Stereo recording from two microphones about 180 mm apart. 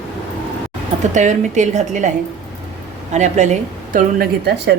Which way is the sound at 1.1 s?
40° right (ahead or behind).